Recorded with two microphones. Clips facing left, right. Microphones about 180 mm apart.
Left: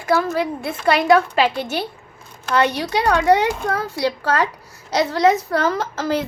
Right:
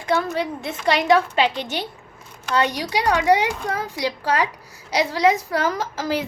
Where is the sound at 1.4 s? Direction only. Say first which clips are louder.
Left 2 dB; 15° right (ahead or behind).